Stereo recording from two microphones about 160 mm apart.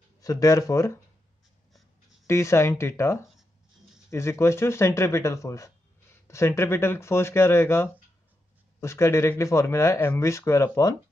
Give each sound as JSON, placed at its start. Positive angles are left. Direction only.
{"t": 0.2, "sound": "speech", "side_deg": 20}
{"t": 2.2, "sound": "speech", "side_deg": 15}